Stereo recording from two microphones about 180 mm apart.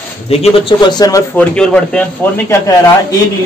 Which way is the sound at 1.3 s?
5° left (ahead or behind).